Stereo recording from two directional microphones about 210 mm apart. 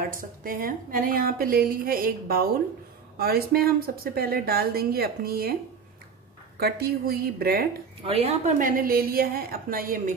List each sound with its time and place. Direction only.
0.0 s a woman's voice: 40° right (ahead or behind)
6.6 s a woman's voice: 50° right (ahead or behind)
8.0 s a woman's voice: 30° right (ahead or behind)